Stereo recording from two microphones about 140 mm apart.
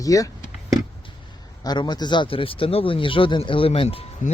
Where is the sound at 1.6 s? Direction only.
30° left (ahead or behind).